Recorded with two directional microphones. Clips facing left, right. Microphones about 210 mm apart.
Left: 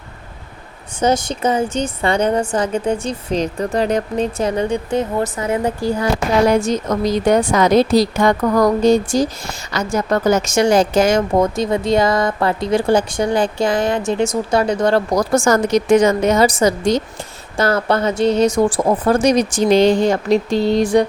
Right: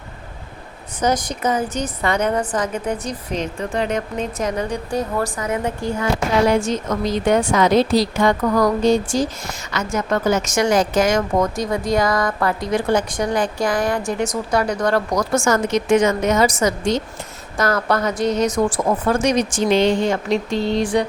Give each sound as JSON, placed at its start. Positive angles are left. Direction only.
{"t": 0.9, "sound": "a woman's voice", "side_deg": 25}